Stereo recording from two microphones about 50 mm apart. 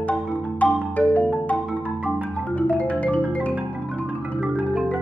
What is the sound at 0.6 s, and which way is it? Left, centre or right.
Music, left.